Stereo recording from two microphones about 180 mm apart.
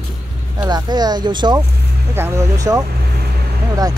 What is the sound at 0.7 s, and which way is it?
Speech, 25° right (ahead or behind).